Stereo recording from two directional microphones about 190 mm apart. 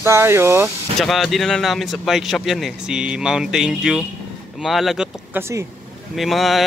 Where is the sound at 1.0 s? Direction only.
Centre (ahead or behind).